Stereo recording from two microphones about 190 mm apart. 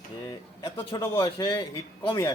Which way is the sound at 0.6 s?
20° left (ahead or behind).